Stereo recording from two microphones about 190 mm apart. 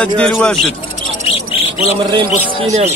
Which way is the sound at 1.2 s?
30° left (ahead or behind).